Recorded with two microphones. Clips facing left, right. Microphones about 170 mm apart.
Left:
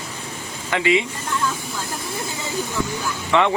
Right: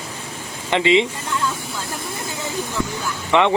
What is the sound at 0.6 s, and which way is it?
Speech, 25° right (ahead or behind).